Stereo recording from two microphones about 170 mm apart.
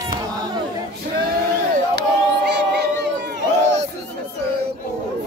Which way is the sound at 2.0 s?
85° right.